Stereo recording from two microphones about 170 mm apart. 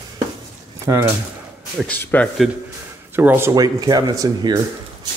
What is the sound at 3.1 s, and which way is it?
Speech, 15° right (ahead or behind).